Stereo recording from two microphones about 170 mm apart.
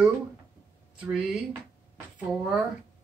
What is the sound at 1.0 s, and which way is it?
Speech, 5° right (ahead or behind).